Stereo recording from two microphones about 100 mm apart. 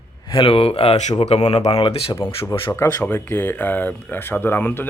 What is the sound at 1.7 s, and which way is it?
Speech, 80° left.